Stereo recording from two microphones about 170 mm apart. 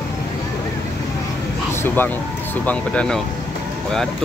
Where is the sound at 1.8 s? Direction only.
10° left (ahead or behind).